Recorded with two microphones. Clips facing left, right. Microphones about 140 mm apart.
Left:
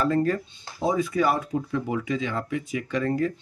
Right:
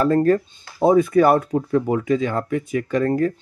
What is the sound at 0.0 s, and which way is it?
Speech, 45° right (ahead or behind).